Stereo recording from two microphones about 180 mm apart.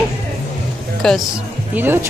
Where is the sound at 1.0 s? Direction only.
5° left (ahead or behind).